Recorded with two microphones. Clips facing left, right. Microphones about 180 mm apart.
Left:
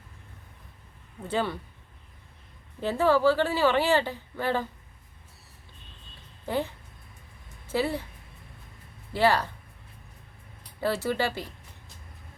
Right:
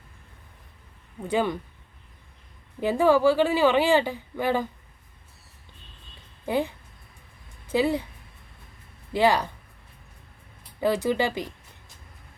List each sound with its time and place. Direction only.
1.3 s speech: 15° right (ahead or behind)
2.8 s speech: 15° right (ahead or behind)
6.4 s speech: 15° right (ahead or behind)
9.1 s speech: 15° right (ahead or behind)
10.8 s speech: 15° right (ahead or behind)